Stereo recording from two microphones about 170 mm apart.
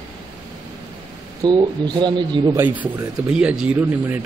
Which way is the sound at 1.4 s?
25° right (ahead or behind).